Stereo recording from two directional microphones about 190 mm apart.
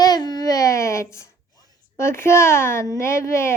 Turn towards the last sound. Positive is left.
turn(degrees=15)  # may be behind; listen again after turning